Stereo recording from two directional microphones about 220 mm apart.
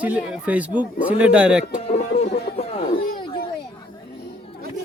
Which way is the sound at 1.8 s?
30° left (ahead or behind).